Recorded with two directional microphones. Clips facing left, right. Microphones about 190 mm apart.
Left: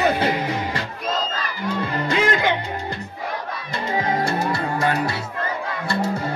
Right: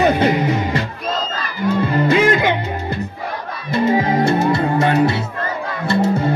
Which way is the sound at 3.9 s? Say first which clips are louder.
Right 6 dB; 20° right (ahead or behind).